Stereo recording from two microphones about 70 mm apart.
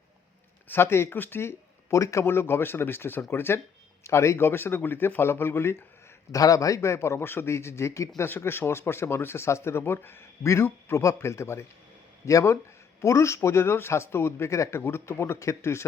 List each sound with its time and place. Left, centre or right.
0.7 s speech: left
2.2 s speech: left
6.3 s a man's voice: left
8.3 s a man's voice: left